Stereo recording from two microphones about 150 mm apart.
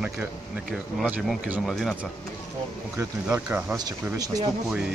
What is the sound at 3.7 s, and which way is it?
Speech, 25° right (ahead or behind).